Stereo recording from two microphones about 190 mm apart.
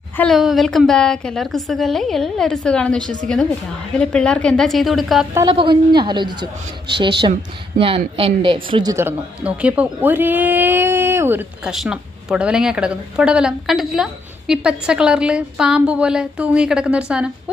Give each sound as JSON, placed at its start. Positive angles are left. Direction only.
{"t": 0.2, "sound": "speech", "side_deg": 0}
{"t": 5.5, "sound": "a woman's voice", "side_deg": -25}